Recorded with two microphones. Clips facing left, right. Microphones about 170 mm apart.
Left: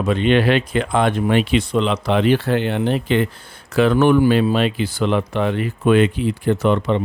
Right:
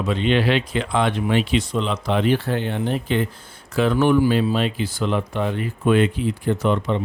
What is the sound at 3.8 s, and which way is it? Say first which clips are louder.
Speech: left 3 dB; 70° left (ahead or behind).